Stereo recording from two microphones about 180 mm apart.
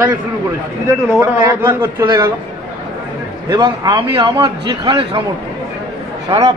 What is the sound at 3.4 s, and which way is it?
A man's voice, 25° right (ahead or behind).